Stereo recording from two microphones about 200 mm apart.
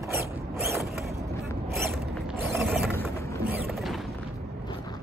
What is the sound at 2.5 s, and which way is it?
Mechanisms, 10° right (ahead or behind).